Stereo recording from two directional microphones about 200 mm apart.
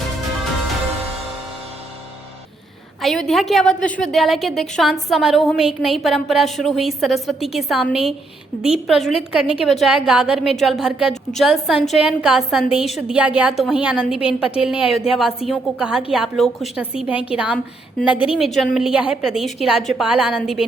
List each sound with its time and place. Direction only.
3.0 s a woman's voice: centre (ahead or behind)
14.9 s a woman's voice: 30° left (ahead or behind)
15.4 s a woman's voice: centre (ahead or behind)